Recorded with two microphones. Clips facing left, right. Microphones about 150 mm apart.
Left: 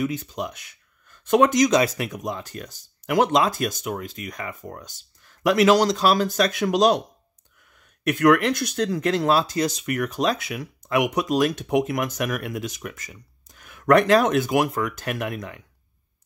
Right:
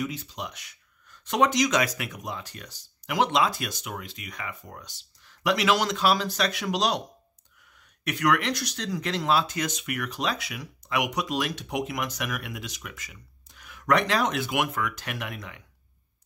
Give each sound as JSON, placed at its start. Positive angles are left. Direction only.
{"t": 0.0, "sound": "speech", "side_deg": 50}
{"t": 1.7, "sound": "speech", "side_deg": 30}
{"t": 2.0, "sound": "speech", "side_deg": 45}
{"t": 8.0, "sound": "speech", "side_deg": 50}